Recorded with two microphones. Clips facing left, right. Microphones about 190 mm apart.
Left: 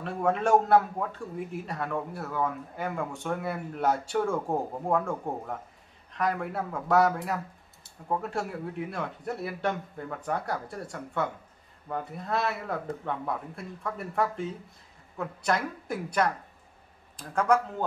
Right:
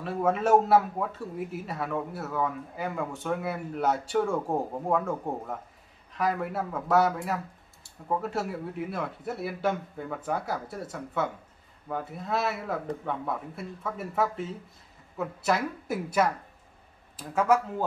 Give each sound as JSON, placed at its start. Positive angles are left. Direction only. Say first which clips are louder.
{"t": 0.0, "sound": "speech", "louder": "right 1 dB", "side_deg": 0}